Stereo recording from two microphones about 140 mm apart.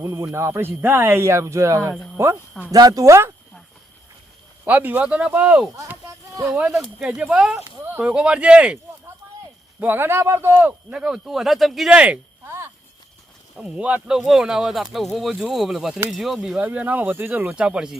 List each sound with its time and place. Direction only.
0.0 s speech: 20° right (ahead or behind)
2.7 s speech: 25° right (ahead or behind)
4.6 s speech: 10° right (ahead or behind)
5.7 s a sound: 20° right (ahead or behind)
6.5 s speech: 5° right (ahead or behind)
9.8 s speech: 15° right (ahead or behind)
13.6 s speech: 10° right (ahead or behind)